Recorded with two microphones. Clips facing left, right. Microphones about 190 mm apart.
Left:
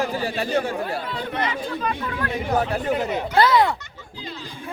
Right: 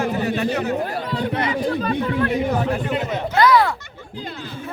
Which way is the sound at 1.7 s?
30° right (ahead or behind).